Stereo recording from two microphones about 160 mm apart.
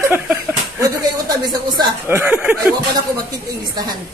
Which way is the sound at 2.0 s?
15° right (ahead or behind).